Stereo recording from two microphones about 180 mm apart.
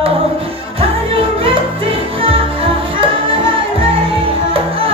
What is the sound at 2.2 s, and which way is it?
Music, 30° right (ahead or behind).